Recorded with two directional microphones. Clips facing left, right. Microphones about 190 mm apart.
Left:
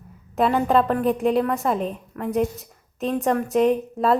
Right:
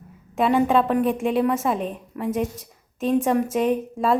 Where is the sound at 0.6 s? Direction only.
Centre (ahead or behind).